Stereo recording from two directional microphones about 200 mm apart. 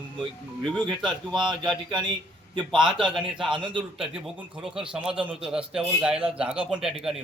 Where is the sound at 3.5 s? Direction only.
25° right (ahead or behind).